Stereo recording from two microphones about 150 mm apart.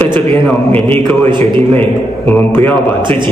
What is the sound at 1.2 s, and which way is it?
Mantra, 35° right (ahead or behind).